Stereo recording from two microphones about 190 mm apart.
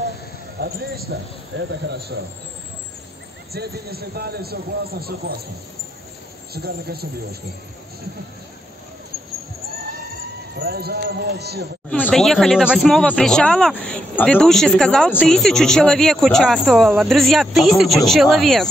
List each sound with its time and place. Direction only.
0.6 s a man's voice: 55° right (ahead or behind)
1.6 s a man's voice: 65° right (ahead or behind)
3.5 s a man's voice: 55° right (ahead or behind)
6.5 s a man's voice: 55° right (ahead or behind)
10.6 s a man's voice: 55° right (ahead or behind)
12.0 s speech: centre (ahead or behind)